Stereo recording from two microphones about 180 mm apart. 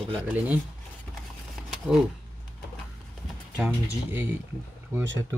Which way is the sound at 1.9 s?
5° right (ahead or behind).